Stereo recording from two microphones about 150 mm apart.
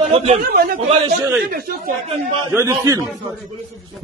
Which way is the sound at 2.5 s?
20° right (ahead or behind).